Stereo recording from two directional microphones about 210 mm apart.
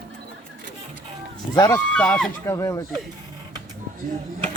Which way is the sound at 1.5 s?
20° left (ahead or behind).